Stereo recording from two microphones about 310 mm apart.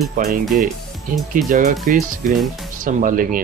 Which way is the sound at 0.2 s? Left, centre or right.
Right.